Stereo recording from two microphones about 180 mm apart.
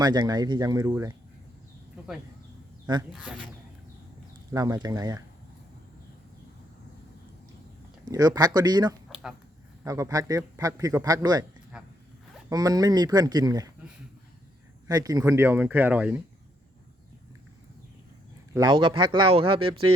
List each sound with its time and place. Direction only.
0.0 s a man's voice: 20° right (ahead or behind)
3.1 s speech: centre (ahead or behind)
4.5 s a man's voice: 20° right (ahead or behind)
8.0 s a man's voice: 20° right (ahead or behind)
9.0 s a sound: centre (ahead or behind)
9.8 s a man's voice: 20° right (ahead or behind)
11.7 s zipper: 5° right (ahead or behind)
12.5 s a man's voice: 20° right (ahead or behind)
14.8 s speech: 20° right (ahead or behind)
18.5 s a man's voice: 25° right (ahead or behind)